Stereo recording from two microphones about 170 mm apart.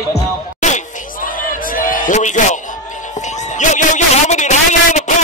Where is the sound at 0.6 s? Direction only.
45° left (ahead or behind).